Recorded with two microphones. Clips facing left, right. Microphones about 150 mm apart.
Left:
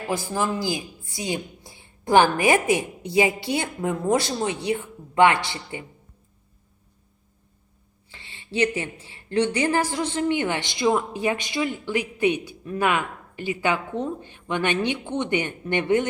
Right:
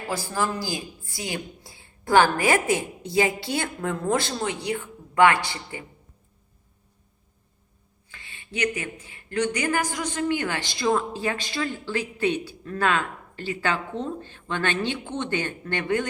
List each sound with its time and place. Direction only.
0.1 s a woman's voice: 20° left (ahead or behind)
8.1 s a woman's voice: 30° left (ahead or behind)